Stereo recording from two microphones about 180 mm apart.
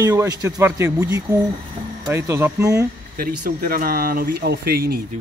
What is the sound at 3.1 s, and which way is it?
Speech, 55° right (ahead or behind).